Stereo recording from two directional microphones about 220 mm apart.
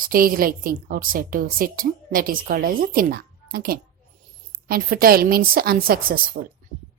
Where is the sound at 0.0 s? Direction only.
40° right (ahead or behind).